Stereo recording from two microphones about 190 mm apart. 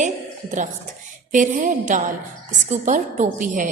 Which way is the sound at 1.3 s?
40° right (ahead or behind).